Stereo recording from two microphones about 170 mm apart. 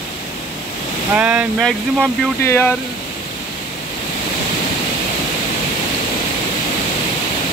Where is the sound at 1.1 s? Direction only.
5° right (ahead or behind).